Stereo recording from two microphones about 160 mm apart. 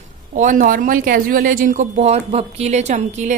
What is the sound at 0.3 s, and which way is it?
Speech, 55° right (ahead or behind).